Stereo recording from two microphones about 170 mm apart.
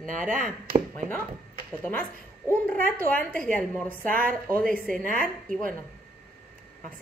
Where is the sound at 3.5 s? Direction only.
10° left (ahead or behind).